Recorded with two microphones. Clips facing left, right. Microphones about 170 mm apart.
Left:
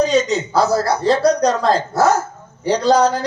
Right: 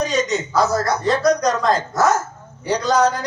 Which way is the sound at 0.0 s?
30° left (ahead or behind).